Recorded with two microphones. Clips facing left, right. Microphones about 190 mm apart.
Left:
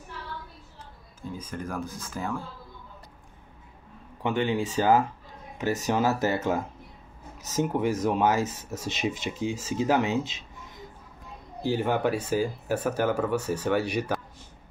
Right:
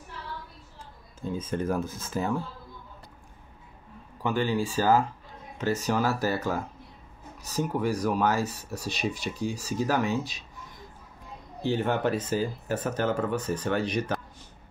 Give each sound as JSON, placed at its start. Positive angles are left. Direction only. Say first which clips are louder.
{"t": 1.4, "sound": "speech", "louder": "right 6 dB", "side_deg": -25}
{"t": 4.2, "sound": "speech", "louder": "left 1 dB", "side_deg": 20}
{"t": 11.6, "sound": "speech", "louder": "left 1 dB", "side_deg": 10}